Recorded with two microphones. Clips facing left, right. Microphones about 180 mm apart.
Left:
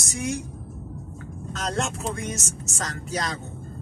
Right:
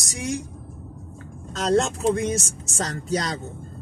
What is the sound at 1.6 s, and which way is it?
Speech, 35° right (ahead or behind).